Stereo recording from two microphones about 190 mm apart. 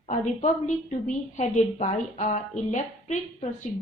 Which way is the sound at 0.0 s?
40° left (ahead or behind).